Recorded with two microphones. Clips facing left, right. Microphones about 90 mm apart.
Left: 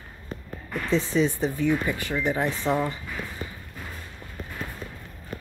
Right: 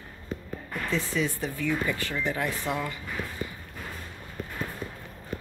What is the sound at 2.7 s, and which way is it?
Speech, 30° left (ahead or behind).